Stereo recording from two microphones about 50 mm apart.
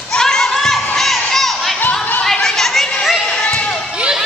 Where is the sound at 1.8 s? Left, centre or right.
Left.